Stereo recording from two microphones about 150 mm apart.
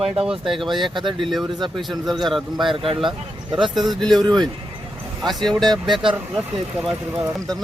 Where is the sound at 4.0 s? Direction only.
Centre (ahead or behind).